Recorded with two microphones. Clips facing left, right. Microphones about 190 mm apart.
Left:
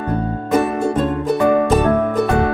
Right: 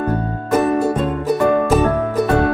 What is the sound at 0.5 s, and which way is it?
Music, 5° right (ahead or behind).